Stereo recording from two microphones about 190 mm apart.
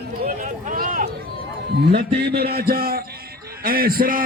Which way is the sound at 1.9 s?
60° right (ahead or behind).